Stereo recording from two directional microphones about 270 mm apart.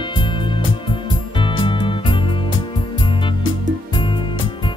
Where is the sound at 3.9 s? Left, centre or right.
Centre.